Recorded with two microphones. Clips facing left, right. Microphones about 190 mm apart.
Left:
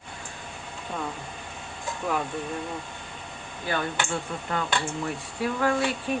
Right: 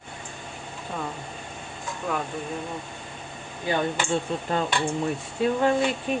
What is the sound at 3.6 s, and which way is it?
Speech, 20° right (ahead or behind).